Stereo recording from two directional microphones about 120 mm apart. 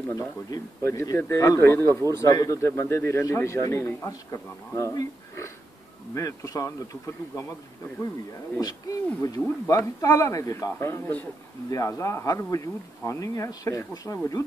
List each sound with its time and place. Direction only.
0.1 s a man's voice: 30° left (ahead or behind)
8.5 s a man's voice: 30° left (ahead or behind)